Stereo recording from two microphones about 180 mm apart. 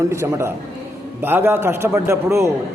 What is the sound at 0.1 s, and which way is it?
A man's voice, 15° right (ahead or behind).